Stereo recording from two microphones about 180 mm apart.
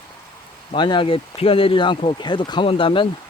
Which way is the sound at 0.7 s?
25° left (ahead or behind).